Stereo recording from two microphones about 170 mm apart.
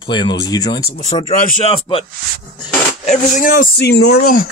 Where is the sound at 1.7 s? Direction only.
30° left (ahead or behind).